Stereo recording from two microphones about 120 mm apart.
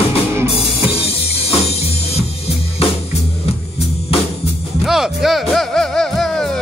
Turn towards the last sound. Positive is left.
turn(degrees=5)  # may be behind; listen again after turning